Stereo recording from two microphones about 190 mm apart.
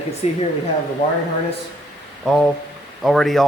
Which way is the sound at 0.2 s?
35° left (ahead or behind).